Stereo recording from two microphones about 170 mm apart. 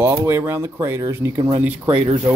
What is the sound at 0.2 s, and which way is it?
Speech, 15° right (ahead or behind).